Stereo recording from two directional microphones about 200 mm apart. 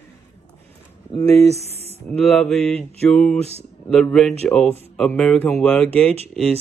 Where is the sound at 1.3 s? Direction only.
30° right (ahead or behind).